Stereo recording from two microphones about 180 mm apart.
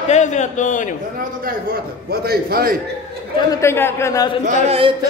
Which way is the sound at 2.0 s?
60° right (ahead or behind).